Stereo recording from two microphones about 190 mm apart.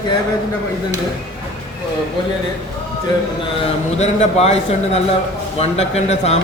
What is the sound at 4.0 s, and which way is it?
A man's voice, 35° left (ahead or behind).